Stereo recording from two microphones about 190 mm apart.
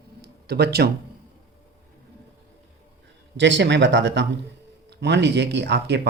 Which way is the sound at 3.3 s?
65° right (ahead or behind).